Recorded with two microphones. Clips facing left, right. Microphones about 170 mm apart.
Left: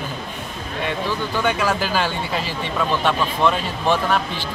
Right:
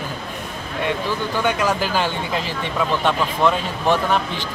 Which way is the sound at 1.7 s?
15° right (ahead or behind).